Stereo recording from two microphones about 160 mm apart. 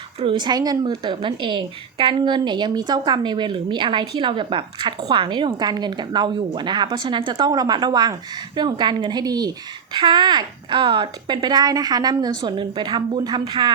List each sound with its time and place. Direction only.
0.2 s a woman's voice: 30° right (ahead or behind)